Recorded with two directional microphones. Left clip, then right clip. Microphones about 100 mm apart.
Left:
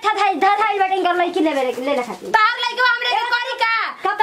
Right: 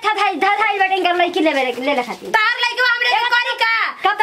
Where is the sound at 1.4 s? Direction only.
25° right (ahead or behind).